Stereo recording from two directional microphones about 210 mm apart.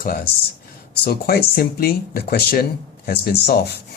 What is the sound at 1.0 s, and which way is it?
Speech, 45° left (ahead or behind).